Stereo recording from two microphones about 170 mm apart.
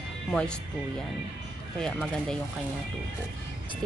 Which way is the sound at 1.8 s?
5° left (ahead or behind).